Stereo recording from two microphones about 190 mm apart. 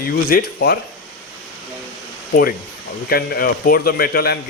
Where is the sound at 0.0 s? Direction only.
50° left (ahead or behind).